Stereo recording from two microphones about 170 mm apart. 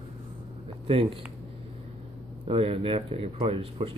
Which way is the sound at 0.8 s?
30° right (ahead or behind).